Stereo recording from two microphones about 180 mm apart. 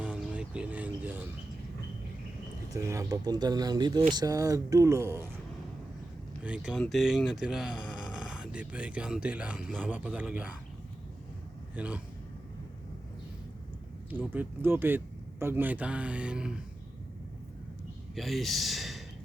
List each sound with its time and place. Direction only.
0.0 s a sound: 5° right (ahead or behind)
2.8 s speech: 15° right (ahead or behind)
6.4 s speech: 5° right (ahead or behind)
11.7 s speech: 10° right (ahead or behind)
14.1 s speech: 10° right (ahead or behind)
18.1 s speech: centre (ahead or behind)